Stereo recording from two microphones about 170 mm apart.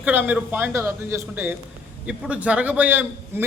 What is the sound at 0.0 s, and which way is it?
A man's voice, 10° right (ahead or behind).